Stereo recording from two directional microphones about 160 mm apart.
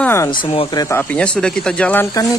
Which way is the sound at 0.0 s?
15° left (ahead or behind).